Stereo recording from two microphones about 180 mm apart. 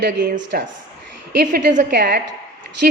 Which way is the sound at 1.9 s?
60° right (ahead or behind).